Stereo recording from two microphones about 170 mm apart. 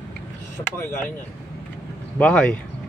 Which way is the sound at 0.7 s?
10° left (ahead or behind).